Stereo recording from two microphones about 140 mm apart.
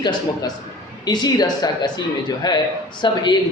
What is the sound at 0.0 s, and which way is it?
A man's voice, 30° left (ahead or behind).